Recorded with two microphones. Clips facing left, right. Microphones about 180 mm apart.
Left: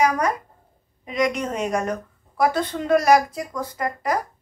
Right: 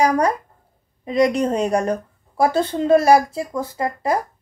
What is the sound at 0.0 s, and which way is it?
A woman's voice, 30° right (ahead or behind).